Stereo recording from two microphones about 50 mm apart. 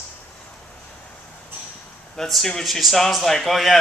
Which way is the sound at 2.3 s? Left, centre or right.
Centre.